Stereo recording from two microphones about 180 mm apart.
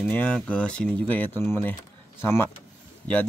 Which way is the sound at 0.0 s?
10° left (ahead or behind).